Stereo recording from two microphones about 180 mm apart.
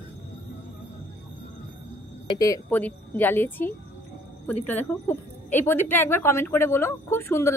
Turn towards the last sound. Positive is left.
turn(degrees=15)  # may be behind; listen again after turning